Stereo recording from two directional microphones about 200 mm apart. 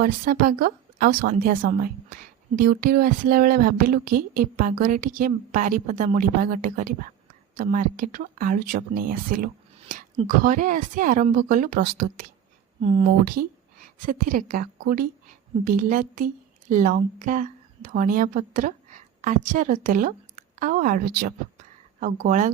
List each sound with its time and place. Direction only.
0.0 s speech: 45° right (ahead or behind)
12.8 s speech: 35° right (ahead or behind)
13.2 s a woman's voice: 50° right (ahead or behind)